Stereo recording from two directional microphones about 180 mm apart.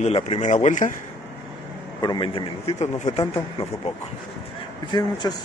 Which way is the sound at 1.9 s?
25° left (ahead or behind).